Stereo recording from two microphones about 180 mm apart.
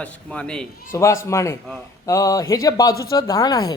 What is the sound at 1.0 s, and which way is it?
Speech, 15° left (ahead or behind).